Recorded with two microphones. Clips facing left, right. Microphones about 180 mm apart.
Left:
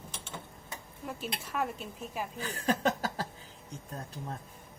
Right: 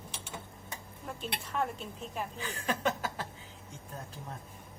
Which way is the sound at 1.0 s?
5° left (ahead or behind).